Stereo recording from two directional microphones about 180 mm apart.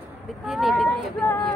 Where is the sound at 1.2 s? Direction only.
10° left (ahead or behind).